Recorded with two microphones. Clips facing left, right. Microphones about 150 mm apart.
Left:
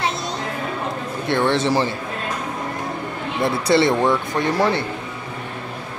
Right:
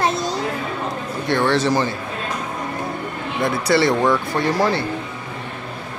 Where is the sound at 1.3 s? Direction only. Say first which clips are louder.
Right 1 dB; 20° left (ahead or behind).